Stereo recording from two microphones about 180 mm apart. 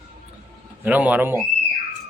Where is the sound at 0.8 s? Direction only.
10° right (ahead or behind).